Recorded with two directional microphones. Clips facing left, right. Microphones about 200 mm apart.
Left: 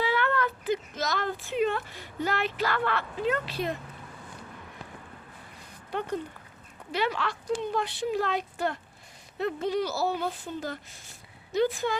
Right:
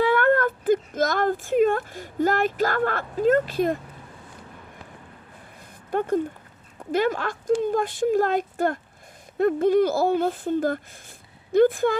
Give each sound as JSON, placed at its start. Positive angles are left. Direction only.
{"t": 0.0, "sound": "speech", "side_deg": -50}
{"t": 5.9, "sound": "speech", "side_deg": -50}